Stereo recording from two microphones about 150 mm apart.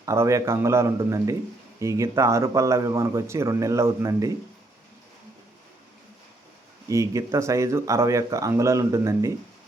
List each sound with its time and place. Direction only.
0.0 s speech: 20° right (ahead or behind)
6.8 s speech: 20° right (ahead or behind)